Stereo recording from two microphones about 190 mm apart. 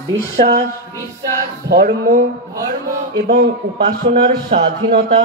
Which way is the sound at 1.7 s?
55° right (ahead or behind).